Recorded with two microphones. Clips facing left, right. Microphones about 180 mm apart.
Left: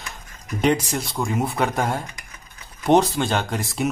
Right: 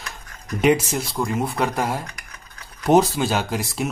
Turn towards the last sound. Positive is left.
turn(degrees=0)  # may be behind; listen again after turning